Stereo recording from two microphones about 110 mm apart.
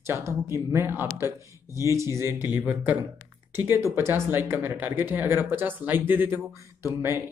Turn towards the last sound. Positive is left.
turn(degrees=-20)  # may be behind; listen again after turning